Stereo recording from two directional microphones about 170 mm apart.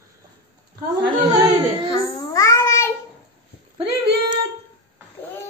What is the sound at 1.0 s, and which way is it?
Speech, 25° right (ahead or behind).